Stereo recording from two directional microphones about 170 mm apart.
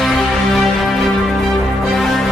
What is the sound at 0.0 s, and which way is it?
Music, centre (ahead or behind).